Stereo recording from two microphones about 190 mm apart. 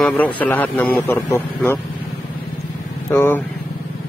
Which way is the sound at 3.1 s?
10° left (ahead or behind).